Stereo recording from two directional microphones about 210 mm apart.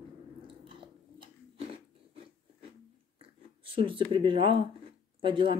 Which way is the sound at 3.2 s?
25° right (ahead or behind).